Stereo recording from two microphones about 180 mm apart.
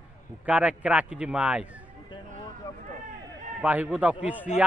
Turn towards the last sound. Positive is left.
turn(degrees=-10)  # may be behind; listen again after turning